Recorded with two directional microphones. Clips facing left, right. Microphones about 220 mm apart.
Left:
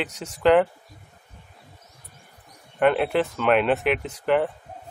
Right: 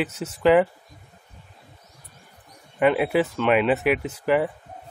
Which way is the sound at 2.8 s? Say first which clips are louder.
Right 1 dB; 5° right (ahead or behind).